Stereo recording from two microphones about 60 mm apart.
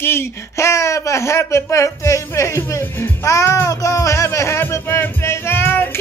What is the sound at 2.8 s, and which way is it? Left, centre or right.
Speech, left.